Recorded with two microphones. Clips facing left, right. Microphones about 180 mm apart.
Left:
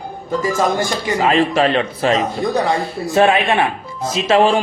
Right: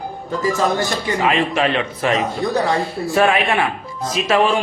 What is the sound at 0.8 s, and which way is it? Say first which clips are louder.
Speech: left 2 dB; 35° left (ahead or behind).